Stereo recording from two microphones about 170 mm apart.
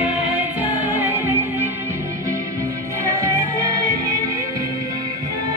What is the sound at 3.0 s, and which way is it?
Music, 20° right (ahead or behind).